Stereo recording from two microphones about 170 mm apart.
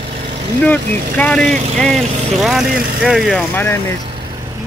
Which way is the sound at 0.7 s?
10° left (ahead or behind).